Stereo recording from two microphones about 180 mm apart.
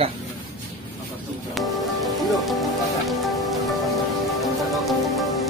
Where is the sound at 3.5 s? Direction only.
Centre (ahead or behind).